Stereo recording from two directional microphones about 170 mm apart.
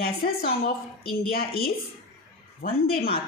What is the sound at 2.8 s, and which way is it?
Speech, 65° left (ahead or behind).